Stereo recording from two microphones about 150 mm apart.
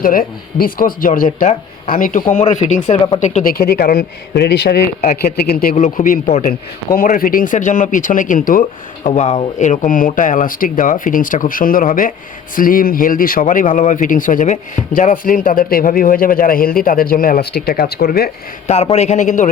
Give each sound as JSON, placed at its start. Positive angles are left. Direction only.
{"t": 0.0, "sound": "speech", "side_deg": 70}
{"t": 2.4, "sound": "a man's voice", "side_deg": 50}
{"t": 3.5, "sound": "speech", "side_deg": 90}
{"t": 5.7, "sound": "speech", "side_deg": 55}
{"t": 9.0, "sound": "speech", "side_deg": 50}
{"t": 18.7, "sound": "a man's voice", "side_deg": 45}